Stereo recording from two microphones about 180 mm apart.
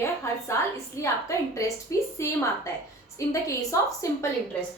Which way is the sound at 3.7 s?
15° left (ahead or behind).